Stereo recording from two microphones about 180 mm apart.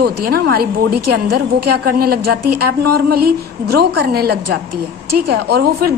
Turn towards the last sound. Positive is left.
turn(degrees=-60)  # may be behind; listen again after turning